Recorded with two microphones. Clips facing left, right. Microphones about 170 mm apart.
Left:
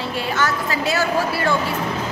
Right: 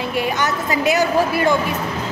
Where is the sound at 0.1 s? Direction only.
15° right (ahead or behind).